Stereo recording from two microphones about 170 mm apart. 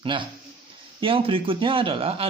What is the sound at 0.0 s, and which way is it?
Speech, 30° right (ahead or behind).